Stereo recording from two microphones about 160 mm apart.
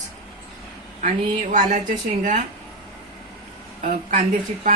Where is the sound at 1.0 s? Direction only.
50° right (ahead or behind).